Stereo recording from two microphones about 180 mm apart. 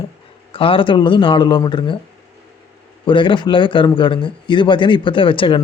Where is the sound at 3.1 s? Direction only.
25° left (ahead or behind).